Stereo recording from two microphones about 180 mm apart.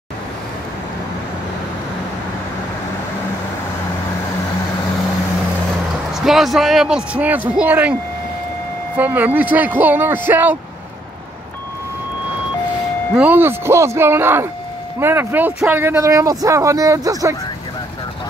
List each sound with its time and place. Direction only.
6.1 s a man's voice: centre (ahead or behind)
8.9 s speech: 10° right (ahead or behind)
13.1 s speech: 10° right (ahead or behind)